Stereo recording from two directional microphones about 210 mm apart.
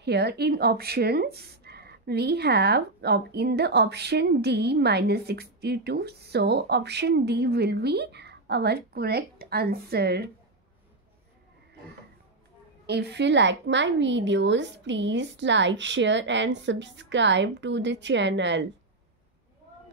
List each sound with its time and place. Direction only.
0.0 s speech: 50° right (ahead or behind)
12.8 s a woman's voice: 55° right (ahead or behind)